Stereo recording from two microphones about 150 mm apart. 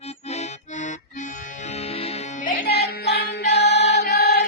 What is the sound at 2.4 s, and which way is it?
Music, 60° left (ahead or behind).